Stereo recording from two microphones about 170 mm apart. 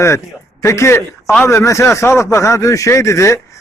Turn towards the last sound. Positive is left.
turn(degrees=15)  # may be behind; listen again after turning